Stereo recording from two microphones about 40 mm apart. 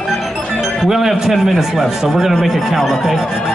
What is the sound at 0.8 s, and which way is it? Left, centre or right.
Speech, centre.